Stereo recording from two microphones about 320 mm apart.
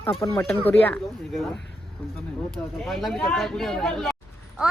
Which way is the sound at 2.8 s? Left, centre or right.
Centre.